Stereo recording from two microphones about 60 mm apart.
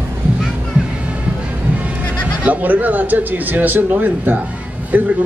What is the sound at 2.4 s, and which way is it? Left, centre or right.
A man's voice, right.